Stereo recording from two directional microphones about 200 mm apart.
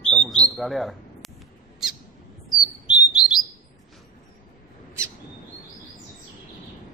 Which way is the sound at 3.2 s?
20° left (ahead or behind).